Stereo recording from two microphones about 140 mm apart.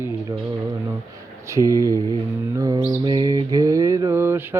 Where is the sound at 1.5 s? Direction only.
20° right (ahead or behind).